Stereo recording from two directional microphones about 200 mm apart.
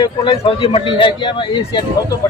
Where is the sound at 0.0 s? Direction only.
25° left (ahead or behind).